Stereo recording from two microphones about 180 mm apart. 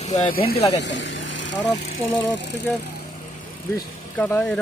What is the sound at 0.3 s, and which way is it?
Speech, 55° left (ahead or behind).